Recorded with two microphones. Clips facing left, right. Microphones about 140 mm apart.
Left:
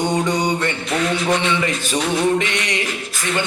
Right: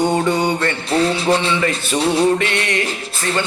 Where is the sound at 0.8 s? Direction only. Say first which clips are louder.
Right 6 dB; 30° right (ahead or behind).